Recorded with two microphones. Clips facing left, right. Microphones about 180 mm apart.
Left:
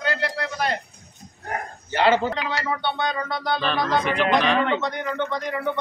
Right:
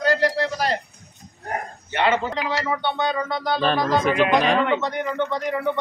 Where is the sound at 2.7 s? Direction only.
15° right (ahead or behind).